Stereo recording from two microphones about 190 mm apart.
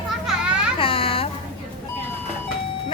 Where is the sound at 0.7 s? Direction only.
30° left (ahead or behind).